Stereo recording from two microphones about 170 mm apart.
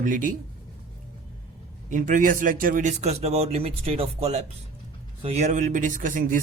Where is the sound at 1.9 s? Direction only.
50° right (ahead or behind).